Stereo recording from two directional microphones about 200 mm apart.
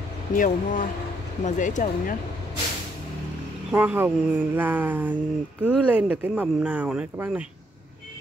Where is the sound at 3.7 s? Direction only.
10° right (ahead or behind).